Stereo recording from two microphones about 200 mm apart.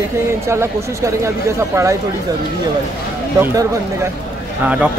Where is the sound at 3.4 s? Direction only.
15° right (ahead or behind).